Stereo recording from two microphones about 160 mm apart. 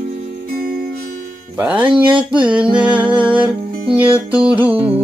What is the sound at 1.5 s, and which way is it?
Music, 10° right (ahead or behind).